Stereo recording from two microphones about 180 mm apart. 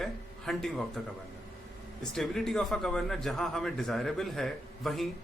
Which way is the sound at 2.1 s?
5° left (ahead or behind).